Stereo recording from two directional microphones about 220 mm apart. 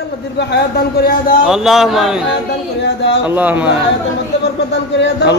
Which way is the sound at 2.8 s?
50° left (ahead or behind).